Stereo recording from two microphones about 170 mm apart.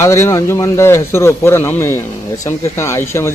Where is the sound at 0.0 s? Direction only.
15° left (ahead or behind).